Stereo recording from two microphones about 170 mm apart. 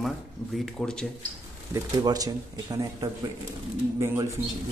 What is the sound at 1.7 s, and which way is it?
Speech, 20° right (ahead or behind).